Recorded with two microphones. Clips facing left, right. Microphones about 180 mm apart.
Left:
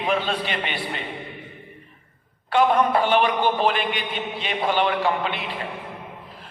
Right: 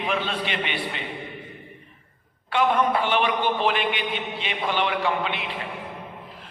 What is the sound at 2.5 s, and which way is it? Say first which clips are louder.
A man's voice: left 3 dB; 40° left (ahead or behind).